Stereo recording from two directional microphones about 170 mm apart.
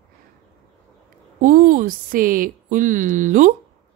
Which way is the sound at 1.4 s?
55° right (ahead or behind).